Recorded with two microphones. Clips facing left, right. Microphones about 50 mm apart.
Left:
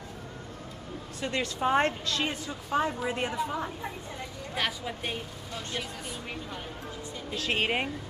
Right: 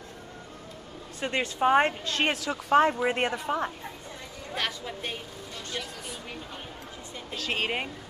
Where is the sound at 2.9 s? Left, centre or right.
Right.